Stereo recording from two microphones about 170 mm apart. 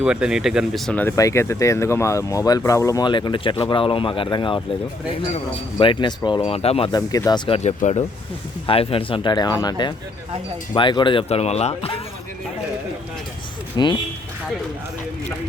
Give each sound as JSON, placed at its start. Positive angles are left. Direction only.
{"t": 0.0, "sound": "speech", "side_deg": -5}
{"t": 5.8, "sound": "speech", "side_deg": 30}
{"t": 6.9, "sound": "speech", "side_deg": 20}
{"t": 13.7, "sound": "speech", "side_deg": 30}